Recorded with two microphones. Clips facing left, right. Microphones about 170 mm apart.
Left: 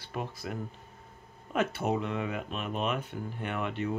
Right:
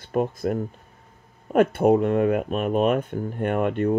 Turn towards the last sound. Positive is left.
turn(degrees=-50)  # may be behind; listen again after turning